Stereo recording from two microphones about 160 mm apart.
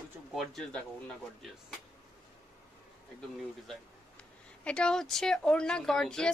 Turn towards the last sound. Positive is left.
turn(degrees=5)  # may be behind; listen again after turning